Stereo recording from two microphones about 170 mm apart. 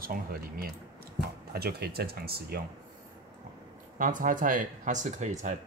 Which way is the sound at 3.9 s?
50° right (ahead or behind).